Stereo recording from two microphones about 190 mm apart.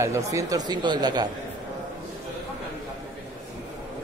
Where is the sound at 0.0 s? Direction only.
15° right (ahead or behind).